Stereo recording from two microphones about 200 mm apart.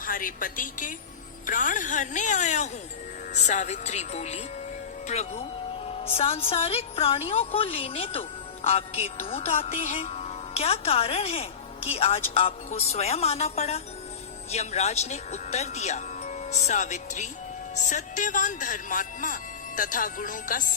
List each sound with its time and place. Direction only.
0.0 s a woman's voice: 45° left (ahead or behind)